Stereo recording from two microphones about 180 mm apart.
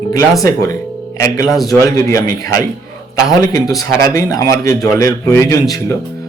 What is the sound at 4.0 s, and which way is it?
A man's voice, 20° left (ahead or behind).